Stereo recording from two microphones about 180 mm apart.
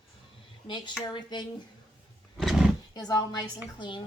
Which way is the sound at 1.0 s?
25° left (ahead or behind).